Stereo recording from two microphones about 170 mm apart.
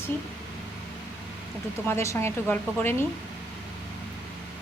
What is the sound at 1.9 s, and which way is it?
A woman's voice, 15° left (ahead or behind).